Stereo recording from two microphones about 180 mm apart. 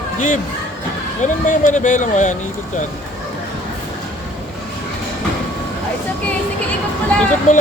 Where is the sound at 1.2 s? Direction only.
45° left (ahead or behind).